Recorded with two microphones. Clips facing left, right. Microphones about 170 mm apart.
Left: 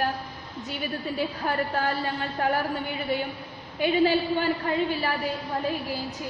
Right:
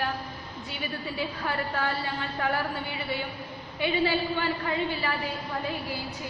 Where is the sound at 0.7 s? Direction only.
45° left (ahead or behind).